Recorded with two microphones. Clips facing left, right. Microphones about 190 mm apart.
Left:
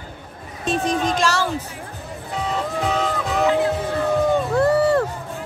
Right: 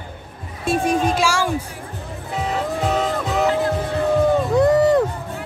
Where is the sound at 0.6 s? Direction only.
10° right (ahead or behind).